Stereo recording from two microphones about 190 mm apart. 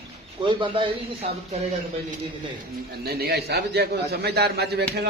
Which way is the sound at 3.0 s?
55° right (ahead or behind).